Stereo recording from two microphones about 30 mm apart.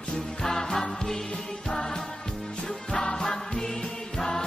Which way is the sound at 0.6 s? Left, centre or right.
Left.